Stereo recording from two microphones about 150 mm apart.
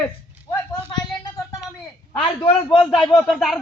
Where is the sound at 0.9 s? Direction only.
25° left (ahead or behind).